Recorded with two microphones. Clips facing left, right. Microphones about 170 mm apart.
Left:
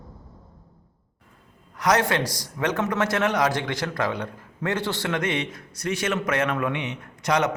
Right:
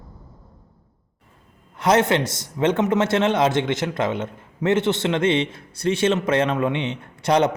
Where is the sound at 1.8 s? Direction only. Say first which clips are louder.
Right 4 dB; 25° right (ahead or behind).